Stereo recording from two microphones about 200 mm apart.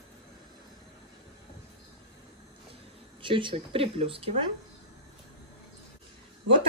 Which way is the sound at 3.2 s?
25° right (ahead or behind).